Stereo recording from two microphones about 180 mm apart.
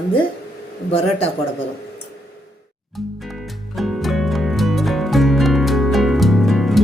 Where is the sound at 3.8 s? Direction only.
Centre (ahead or behind).